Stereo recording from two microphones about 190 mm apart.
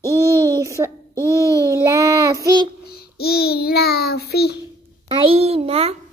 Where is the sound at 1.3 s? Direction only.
15° left (ahead or behind).